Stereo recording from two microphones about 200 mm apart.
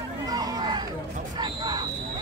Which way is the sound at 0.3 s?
20° right (ahead or behind).